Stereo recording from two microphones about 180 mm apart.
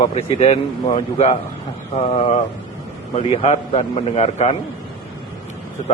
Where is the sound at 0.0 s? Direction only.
35° left (ahead or behind).